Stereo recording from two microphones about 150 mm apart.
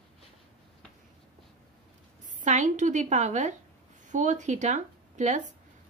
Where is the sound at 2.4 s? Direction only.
55° right (ahead or behind).